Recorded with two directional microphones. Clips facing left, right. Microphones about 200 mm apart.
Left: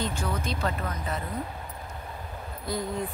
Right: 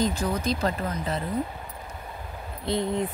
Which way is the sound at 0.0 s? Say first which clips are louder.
Right 5 dB; 40° right (ahead or behind).